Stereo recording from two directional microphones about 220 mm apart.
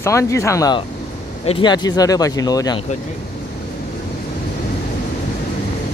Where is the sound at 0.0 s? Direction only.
15° left (ahead or behind).